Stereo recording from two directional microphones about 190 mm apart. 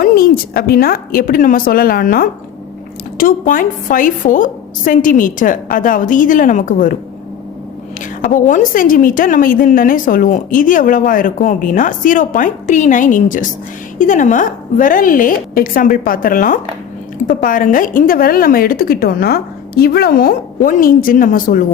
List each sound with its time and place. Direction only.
0.0 s a woman's voice: 50° left (ahead or behind)
8.3 s a woman's voice: 45° left (ahead or behind)